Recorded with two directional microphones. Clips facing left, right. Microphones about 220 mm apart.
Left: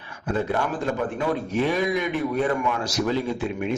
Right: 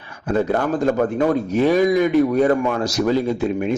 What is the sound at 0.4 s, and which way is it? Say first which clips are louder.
Speech: right 7 dB; 40° right (ahead or behind).